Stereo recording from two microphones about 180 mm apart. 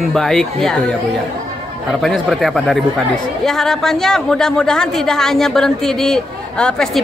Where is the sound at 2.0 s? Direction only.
Centre (ahead or behind).